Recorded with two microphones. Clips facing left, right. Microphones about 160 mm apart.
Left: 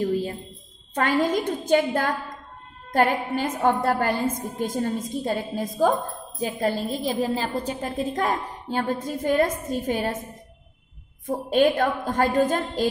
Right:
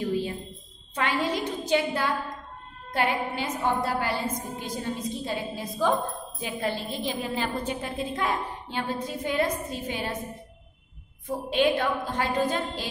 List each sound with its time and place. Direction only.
0.0 s a sound: 40° left (ahead or behind)
0.9 s a woman's voice: 45° left (ahead or behind)
11.2 s a woman's voice: 40° left (ahead or behind)